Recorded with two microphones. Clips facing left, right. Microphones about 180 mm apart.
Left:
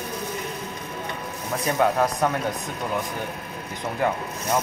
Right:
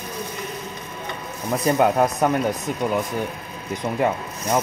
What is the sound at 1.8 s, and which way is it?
Speech, 20° right (ahead or behind).